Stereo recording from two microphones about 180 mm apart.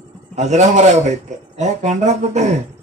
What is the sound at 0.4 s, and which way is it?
Speech, 40° right (ahead or behind).